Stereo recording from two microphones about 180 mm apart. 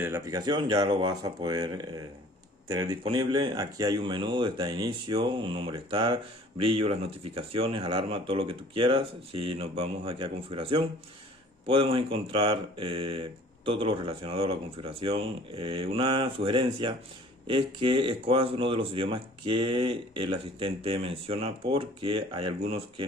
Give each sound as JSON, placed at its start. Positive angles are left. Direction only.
{"t": 0.0, "sound": "speech", "side_deg": -15}